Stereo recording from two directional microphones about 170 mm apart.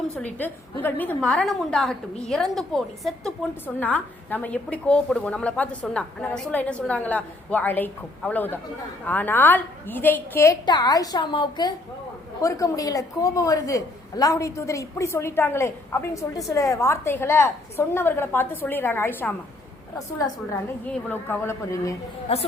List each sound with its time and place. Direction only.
0.2 s a woman's voice: 10° left (ahead or behind)
22.3 s a woman's voice: 35° left (ahead or behind)